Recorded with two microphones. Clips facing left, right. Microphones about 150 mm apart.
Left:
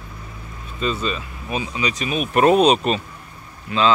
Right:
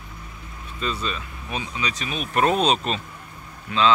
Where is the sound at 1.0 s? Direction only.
5° left (ahead or behind).